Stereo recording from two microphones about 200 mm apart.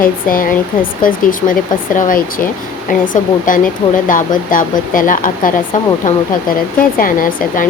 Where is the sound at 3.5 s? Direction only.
40° left (ahead or behind).